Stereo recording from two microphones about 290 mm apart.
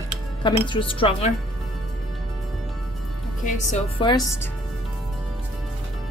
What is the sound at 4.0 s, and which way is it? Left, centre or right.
Speech, centre.